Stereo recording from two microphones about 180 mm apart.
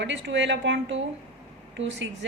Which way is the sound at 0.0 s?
85° right.